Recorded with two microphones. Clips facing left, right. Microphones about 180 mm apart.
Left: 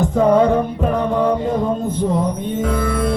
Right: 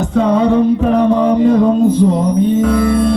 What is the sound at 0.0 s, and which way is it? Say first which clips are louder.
Music: right 1 dB; 75° right (ahead or behind).